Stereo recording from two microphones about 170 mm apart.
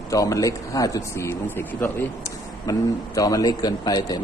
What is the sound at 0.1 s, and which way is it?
A man's voice, 20° left (ahead or behind).